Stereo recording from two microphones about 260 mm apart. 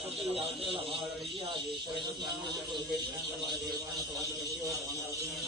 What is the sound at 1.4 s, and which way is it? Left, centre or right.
Speech, centre.